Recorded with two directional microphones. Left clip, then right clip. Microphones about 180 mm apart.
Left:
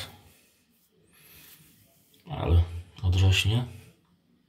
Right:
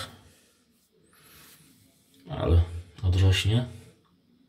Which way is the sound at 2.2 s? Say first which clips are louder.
Right 3 dB; 15° right (ahead or behind).